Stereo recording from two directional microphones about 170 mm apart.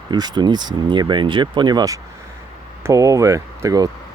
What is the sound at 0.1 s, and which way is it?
Speech, 25° right (ahead or behind).